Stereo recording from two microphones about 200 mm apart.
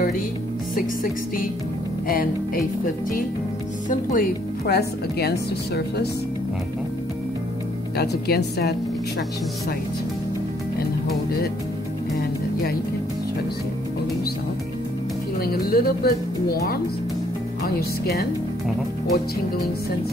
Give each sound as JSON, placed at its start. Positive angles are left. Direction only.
{"t": 2.0, "sound": "speech", "side_deg": 45}
{"t": 3.9, "sound": "speech", "side_deg": 45}
{"t": 8.0, "sound": "speech", "side_deg": 55}
{"t": 15.4, "sound": "speech", "side_deg": 50}